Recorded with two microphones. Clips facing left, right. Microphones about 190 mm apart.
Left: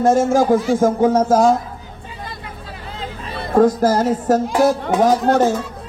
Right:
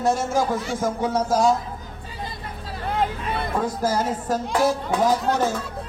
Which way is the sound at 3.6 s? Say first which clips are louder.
Left 8 dB; 60° left (ahead or behind).